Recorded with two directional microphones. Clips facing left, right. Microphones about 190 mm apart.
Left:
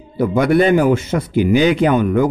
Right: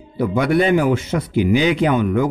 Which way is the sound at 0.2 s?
45° left (ahead or behind).